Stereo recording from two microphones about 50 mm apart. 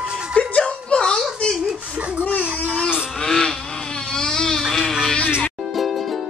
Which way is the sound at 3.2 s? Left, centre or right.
Centre.